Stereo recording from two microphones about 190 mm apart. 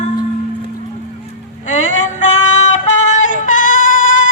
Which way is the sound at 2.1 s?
40° left (ahead or behind).